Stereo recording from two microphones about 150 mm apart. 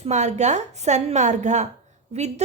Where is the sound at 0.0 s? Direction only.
50° right (ahead or behind).